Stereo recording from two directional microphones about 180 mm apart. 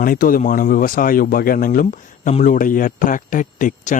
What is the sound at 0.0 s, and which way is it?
Speech, 50° left (ahead or behind).